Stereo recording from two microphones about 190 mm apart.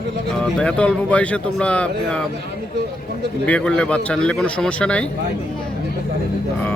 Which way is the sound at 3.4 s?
5° left (ahead or behind).